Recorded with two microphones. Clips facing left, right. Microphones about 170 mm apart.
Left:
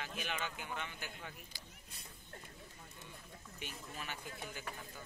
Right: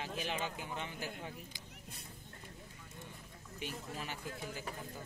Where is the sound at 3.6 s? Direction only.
30° right (ahead or behind).